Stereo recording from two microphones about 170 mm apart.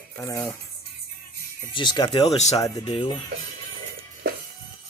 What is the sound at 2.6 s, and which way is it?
Speech, 20° left (ahead or behind).